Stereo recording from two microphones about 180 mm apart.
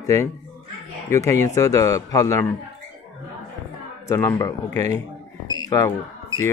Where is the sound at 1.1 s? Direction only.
15° left (ahead or behind).